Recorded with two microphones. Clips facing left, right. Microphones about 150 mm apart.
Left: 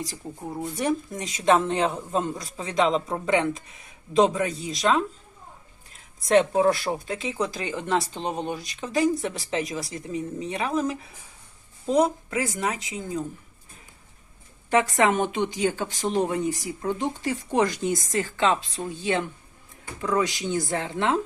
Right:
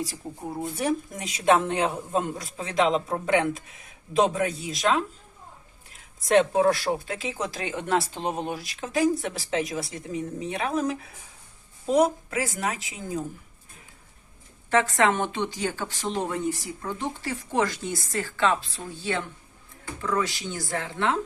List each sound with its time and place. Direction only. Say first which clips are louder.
0.5 s speech: left 1 dB; 5° right (ahead or behind)
14.7 s speech: left 1 dB; 15° left (ahead or behind)